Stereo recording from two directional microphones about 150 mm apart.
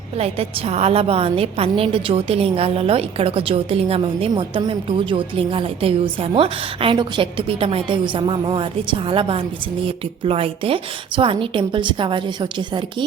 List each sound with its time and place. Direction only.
0.2 s a woman's voice: 40° right (ahead or behind)